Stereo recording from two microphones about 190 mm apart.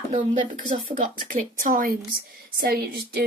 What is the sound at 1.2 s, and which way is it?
Speech, 45° right (ahead or behind).